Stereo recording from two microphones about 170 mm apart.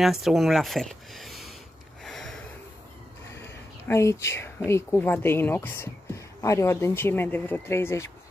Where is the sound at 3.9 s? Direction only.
15° left (ahead or behind).